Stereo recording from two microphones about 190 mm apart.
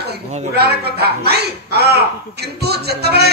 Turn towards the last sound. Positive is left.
turn(degrees=-60)  # may be behind; listen again after turning